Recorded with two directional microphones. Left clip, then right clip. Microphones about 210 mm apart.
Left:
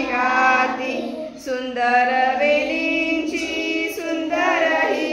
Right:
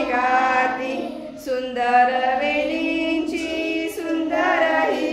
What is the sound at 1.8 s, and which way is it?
Mantra, 10° right (ahead or behind).